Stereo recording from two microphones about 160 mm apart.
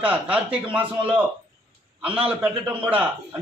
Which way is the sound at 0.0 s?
10° right (ahead or behind).